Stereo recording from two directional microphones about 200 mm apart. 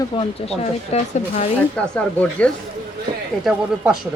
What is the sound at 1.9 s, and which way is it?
Speech, 5° left (ahead or behind).